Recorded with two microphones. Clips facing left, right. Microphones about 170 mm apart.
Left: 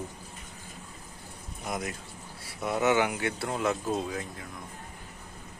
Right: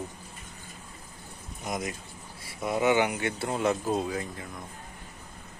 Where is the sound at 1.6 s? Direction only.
Centre (ahead or behind).